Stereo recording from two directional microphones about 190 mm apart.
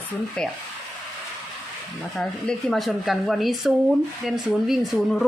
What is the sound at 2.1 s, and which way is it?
Speech, 5° left (ahead or behind).